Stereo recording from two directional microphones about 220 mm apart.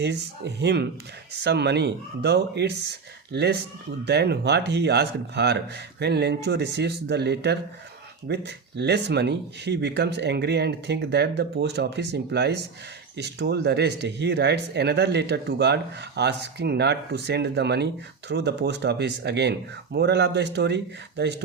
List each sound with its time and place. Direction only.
0.0 s speech: 50° right (ahead or behind)